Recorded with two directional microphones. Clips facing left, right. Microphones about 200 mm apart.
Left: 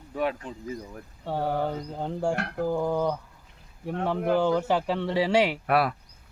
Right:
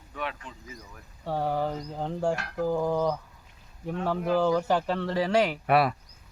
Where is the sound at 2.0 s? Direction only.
Centre (ahead or behind).